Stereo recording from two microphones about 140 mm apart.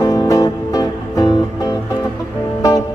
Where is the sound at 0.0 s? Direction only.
25° left (ahead or behind).